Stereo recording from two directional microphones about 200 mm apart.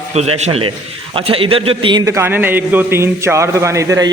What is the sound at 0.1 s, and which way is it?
A man's voice, 35° right (ahead or behind).